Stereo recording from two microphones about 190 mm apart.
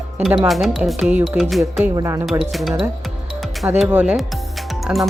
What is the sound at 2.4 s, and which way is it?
Speech, centre (ahead or behind).